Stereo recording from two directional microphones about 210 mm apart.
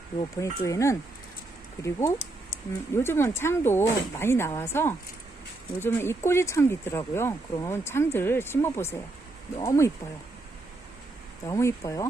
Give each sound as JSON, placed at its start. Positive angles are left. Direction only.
{"t": 0.2, "sound": "speech", "side_deg": 15}
{"t": 11.4, "sound": "speech", "side_deg": 15}